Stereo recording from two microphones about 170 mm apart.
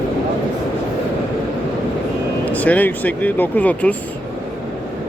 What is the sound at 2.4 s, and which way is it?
Speech, 10° left (ahead or behind).